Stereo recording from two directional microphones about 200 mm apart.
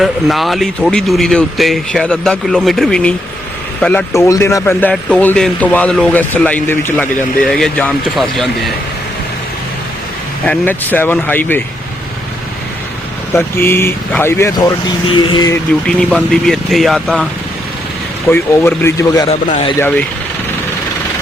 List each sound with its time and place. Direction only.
0.0 s speech: centre (ahead or behind)
4.1 s speech: 15° left (ahead or behind)
10.4 s speech: 5° left (ahead or behind)
13.3 s speech: 10° left (ahead or behind)
15.0 s a sound: 25° left (ahead or behind)
15.9 s speech: 5° left (ahead or behind)
18.3 s speech: 10° left (ahead or behind)
19.3 s speech: 35° left (ahead or behind)